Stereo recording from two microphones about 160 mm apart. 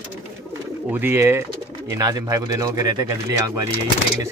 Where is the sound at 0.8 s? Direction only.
10° right (ahead or behind).